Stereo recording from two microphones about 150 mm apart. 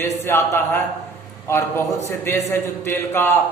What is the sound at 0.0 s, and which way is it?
A man's voice, 15° left (ahead or behind).